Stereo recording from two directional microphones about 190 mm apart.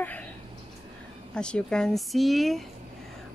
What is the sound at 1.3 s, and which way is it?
Speech, 5° left (ahead or behind).